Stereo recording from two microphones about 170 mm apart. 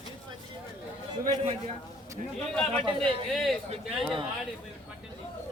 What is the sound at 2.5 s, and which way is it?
Speech, 5° left (ahead or behind).